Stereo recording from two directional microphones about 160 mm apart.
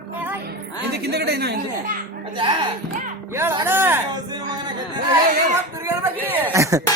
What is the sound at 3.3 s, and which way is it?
Speech, 15° right (ahead or behind).